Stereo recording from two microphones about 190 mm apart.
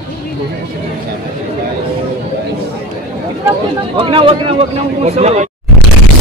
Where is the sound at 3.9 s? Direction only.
30° right (ahead or behind).